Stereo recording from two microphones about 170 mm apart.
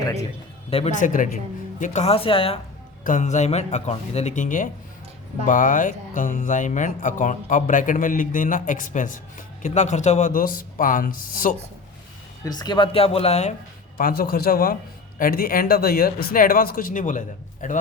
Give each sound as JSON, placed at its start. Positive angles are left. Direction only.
{"t": 0.0, "sound": "a man's voice", "side_deg": 20}
{"t": 0.7, "sound": "speech", "side_deg": 35}
{"t": 0.9, "sound": "speech", "side_deg": 50}
{"t": 3.0, "sound": "speech", "side_deg": 45}
{"t": 12.5, "sound": "speech", "side_deg": 25}
{"t": 14.0, "sound": "speech", "side_deg": 60}